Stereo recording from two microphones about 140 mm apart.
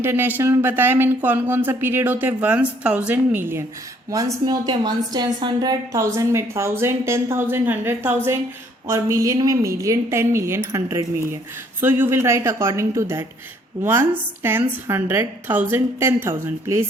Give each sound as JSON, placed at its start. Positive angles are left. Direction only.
{"t": 0.0, "sound": "speech", "side_deg": -15}
{"t": 4.1, "sound": "a woman's voice", "side_deg": -25}